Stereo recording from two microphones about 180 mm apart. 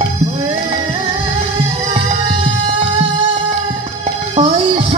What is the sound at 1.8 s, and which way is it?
Music, 30° right (ahead or behind).